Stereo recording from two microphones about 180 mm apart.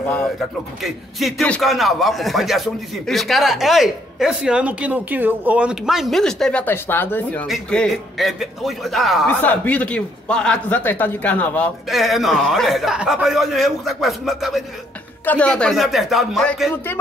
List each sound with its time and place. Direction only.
0.8 s speech: centre (ahead or behind)